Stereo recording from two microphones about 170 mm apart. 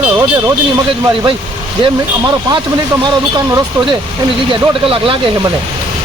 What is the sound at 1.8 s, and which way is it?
Speech, 25° right (ahead or behind).